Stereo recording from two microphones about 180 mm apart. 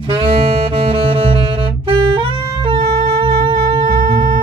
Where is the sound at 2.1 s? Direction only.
30° right (ahead or behind).